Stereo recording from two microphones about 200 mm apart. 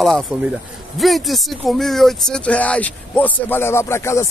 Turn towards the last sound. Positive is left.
turn(degrees=15)  # may be behind; listen again after turning